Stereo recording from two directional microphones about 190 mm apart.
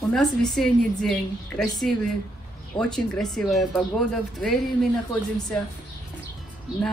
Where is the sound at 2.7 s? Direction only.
5° left (ahead or behind).